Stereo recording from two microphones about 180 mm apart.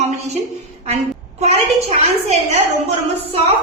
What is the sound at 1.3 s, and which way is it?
A woman's voice, 35° right (ahead or behind).